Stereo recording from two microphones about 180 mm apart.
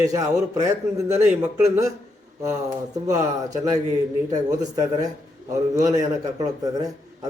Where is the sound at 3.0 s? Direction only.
20° right (ahead or behind).